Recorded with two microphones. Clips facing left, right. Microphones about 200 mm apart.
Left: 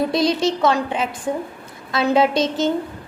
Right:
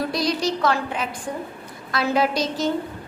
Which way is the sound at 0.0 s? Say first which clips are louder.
Left 5 dB; 25° left (ahead or behind).